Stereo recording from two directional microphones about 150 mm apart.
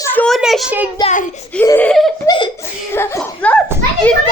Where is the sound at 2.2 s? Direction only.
30° left (ahead or behind).